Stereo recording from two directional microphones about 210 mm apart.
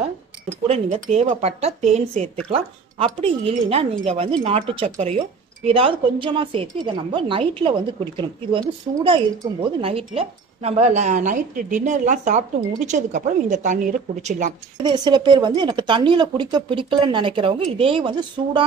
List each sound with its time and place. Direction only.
0.7 s speech: 30° right (ahead or behind)
14.8 s speech: 20° right (ahead or behind)